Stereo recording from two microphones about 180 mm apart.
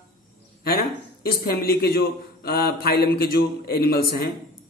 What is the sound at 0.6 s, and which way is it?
A man's voice, 55° left (ahead or behind).